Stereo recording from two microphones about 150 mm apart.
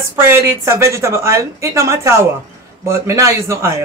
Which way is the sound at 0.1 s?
15° right (ahead or behind).